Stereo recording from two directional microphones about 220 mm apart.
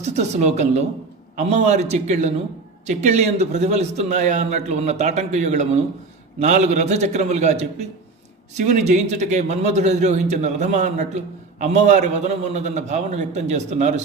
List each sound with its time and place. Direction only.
0.0 s a man's voice: 30° right (ahead or behind)